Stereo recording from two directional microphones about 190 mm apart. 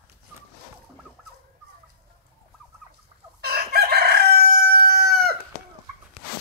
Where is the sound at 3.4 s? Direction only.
55° right (ahead or behind).